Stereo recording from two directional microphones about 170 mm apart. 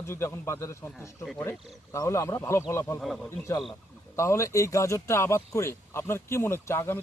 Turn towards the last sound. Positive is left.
turn(degrees=15)  # may be behind; listen again after turning